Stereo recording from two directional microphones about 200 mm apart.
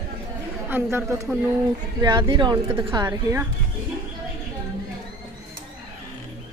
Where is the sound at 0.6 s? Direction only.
10° right (ahead or behind).